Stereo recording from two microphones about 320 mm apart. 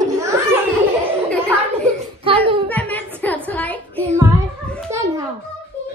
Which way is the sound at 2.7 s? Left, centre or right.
Centre.